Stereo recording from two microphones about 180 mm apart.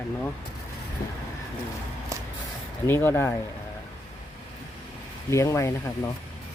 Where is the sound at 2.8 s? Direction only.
15° left (ahead or behind).